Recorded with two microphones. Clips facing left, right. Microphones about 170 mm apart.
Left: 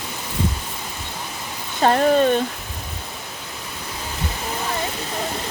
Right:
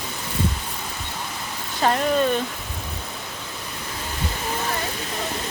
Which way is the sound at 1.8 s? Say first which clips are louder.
Left 4 dB; 35° left (ahead or behind).